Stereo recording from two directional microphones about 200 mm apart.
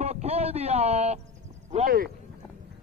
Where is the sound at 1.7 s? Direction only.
45° right (ahead or behind).